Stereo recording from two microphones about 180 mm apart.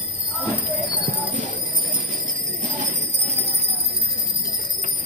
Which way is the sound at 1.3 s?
55° right (ahead or behind).